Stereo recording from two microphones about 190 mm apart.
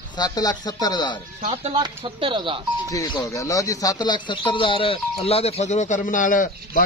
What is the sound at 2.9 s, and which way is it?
Speech, 20° left (ahead or behind).